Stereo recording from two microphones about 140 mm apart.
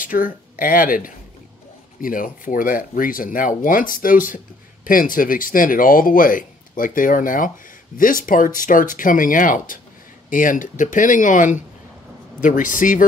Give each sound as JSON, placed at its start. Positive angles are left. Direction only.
{"t": 0.0, "sound": "speech", "side_deg": 75}